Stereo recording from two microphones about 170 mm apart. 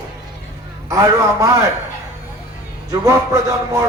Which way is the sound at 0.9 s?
20° right (ahead or behind).